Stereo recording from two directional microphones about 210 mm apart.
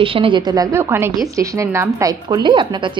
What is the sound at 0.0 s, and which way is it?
A woman's voice, 25° right (ahead or behind).